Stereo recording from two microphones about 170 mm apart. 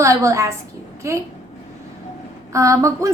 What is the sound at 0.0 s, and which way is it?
A woman's voice, 15° right (ahead or behind).